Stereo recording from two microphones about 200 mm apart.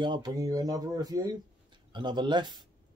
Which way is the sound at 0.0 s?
20° right (ahead or behind).